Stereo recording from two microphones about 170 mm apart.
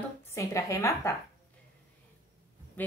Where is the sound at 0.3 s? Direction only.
15° left (ahead or behind).